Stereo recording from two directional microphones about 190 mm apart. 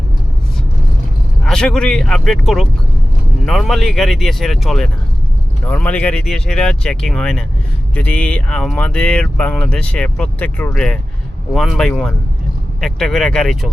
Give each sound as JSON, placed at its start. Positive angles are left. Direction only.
{"t": 1.5, "sound": "speech", "side_deg": 5}